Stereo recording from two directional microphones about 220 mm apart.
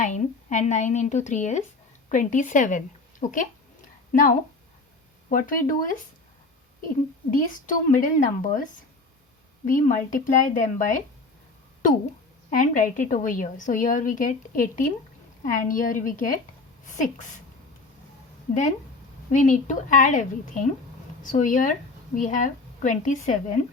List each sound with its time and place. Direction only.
0.0 s a woman's voice: 35° left (ahead or behind)
9.6 s a woman's voice: 35° left (ahead or behind)
12.5 s a woman's voice: 35° left (ahead or behind)
19.3 s a woman's voice: 35° left (ahead or behind)